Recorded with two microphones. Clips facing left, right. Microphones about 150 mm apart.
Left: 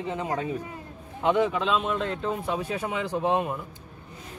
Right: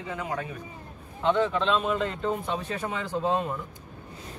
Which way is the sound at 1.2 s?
15° left (ahead or behind).